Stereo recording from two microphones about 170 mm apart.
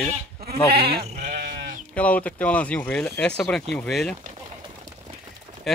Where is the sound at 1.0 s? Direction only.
45° right (ahead or behind).